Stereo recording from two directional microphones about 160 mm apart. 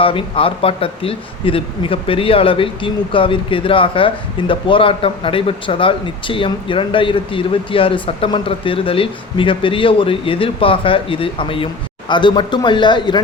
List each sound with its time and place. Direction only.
0.0 s speech: 35° left (ahead or behind)